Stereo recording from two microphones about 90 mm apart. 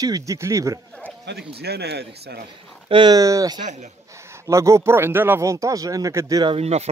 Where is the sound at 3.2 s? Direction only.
40° right (ahead or behind); by 5.4 s 25° right (ahead or behind).